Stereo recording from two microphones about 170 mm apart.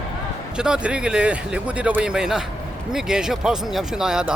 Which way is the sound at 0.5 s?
5° right (ahead or behind).